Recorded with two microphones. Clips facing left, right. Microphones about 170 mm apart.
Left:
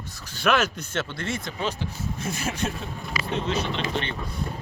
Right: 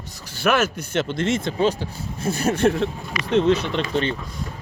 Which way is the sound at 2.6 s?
70° right (ahead or behind).